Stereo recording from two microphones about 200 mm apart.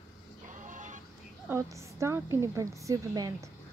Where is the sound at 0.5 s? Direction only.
40° right (ahead or behind).